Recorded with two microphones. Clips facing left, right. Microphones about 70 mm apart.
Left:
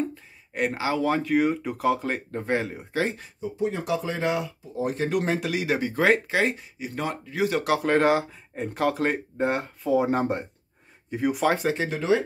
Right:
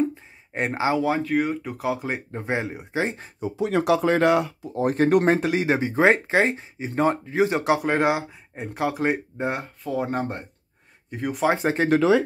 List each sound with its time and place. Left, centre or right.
0.1 s a sound: right
0.9 s speech: centre; by 3.2 s right
3.3 s speech: right; by 11.4 s centre
11.6 s speech: right